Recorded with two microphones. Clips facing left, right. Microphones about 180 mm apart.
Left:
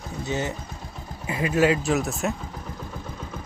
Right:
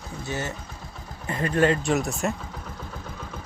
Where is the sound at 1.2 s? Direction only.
10° left (ahead or behind).